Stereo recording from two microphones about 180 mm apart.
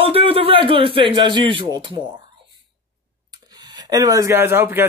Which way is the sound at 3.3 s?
20° right (ahead or behind).